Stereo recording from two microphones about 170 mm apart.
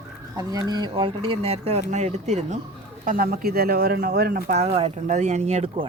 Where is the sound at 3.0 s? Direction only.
55° right (ahead or behind).